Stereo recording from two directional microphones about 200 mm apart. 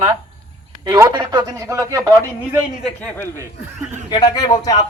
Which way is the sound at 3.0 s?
10° left (ahead or behind).